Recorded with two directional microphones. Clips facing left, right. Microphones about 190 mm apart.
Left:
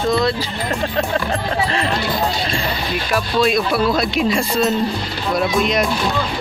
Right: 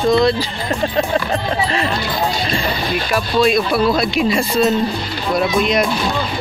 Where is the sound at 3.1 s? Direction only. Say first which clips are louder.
Right 2 dB; centre (ahead or behind).